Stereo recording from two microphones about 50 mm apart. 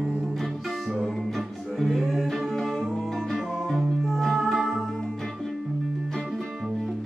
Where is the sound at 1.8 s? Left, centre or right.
Centre.